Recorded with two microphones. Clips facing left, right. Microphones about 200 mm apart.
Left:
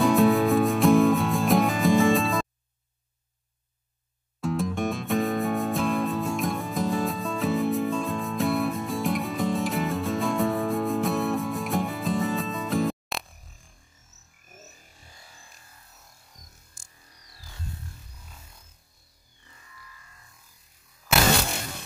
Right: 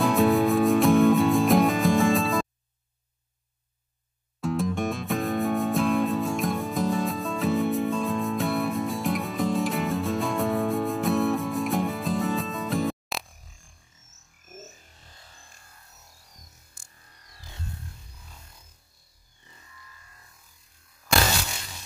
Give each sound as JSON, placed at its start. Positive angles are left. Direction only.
{"t": 0.0, "sound": "music", "side_deg": 0}
{"t": 4.4, "sound": "music", "side_deg": 0}
{"t": 15.0, "sound": "music", "side_deg": 10}
{"t": 16.7, "sound": "music", "side_deg": -60}
{"t": 21.3, "sound": "a sound", "side_deg": 55}